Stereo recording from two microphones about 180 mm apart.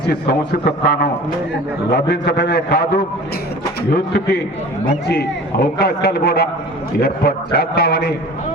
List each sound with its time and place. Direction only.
0.1 s a man's voice: 65° left (ahead or behind)